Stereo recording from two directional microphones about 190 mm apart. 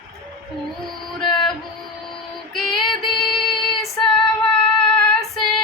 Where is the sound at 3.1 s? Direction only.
25° left (ahead or behind).